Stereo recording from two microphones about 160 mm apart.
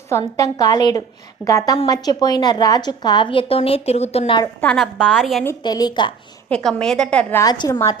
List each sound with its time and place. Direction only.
0.1 s a woman's voice: 20° left (ahead or behind); by 4.4 s 40° left (ahead or behind)
4.6 s a woman's voice: centre (ahead or behind)
5.6 s a woman's voice: 25° left (ahead or behind)
6.5 s a woman's voice: 5° left (ahead or behind)
7.4 s a woman's voice: 20° left (ahead or behind)